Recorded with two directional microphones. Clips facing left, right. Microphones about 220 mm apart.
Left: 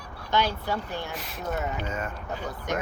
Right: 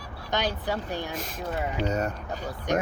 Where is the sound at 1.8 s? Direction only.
40° right (ahead or behind).